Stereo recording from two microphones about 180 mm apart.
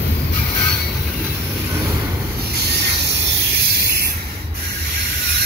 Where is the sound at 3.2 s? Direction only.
65° right (ahead or behind).